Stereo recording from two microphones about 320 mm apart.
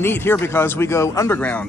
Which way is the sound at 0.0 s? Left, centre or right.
Centre.